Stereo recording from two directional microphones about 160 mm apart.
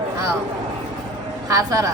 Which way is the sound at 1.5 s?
20° right (ahead or behind).